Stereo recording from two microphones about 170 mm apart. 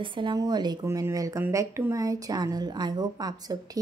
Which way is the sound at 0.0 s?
30° right (ahead or behind).